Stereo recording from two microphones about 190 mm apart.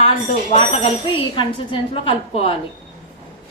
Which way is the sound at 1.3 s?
25° left (ahead or behind).